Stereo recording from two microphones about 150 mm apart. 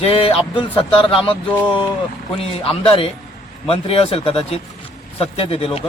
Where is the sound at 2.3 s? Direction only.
40° left (ahead or behind).